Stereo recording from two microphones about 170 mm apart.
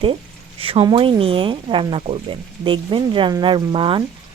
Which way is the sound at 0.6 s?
30° right (ahead or behind).